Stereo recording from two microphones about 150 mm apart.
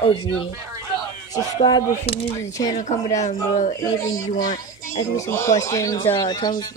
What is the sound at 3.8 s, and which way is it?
Speech, 25° left (ahead or behind).